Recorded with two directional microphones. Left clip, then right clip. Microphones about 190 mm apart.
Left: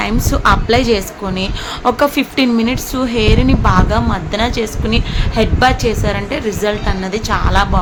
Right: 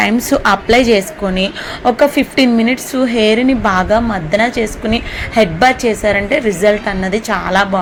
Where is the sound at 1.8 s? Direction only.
5° right (ahead or behind).